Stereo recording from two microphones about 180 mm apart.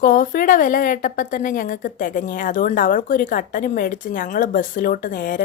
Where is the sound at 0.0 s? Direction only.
50° left (ahead or behind).